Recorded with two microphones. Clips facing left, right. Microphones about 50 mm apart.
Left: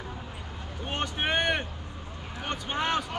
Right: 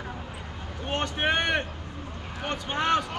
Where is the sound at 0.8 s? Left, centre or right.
Centre.